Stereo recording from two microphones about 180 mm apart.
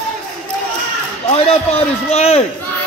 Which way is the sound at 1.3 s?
35° left (ahead or behind).